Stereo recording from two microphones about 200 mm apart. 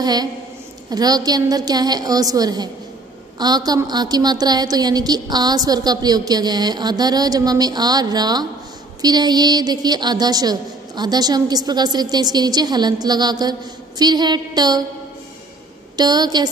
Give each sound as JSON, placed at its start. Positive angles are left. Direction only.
{"t": 0.0, "sound": "a woman's voice", "side_deg": -20}
{"t": 16.0, "sound": "a woman's voice", "side_deg": -20}